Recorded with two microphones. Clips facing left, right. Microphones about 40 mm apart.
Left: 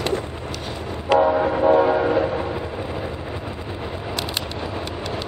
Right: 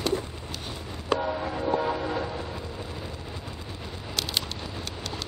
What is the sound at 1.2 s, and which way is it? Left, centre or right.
Train, left.